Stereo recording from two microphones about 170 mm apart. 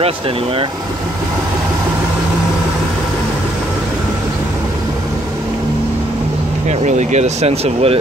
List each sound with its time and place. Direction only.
6.8 s speech: 45° right (ahead or behind)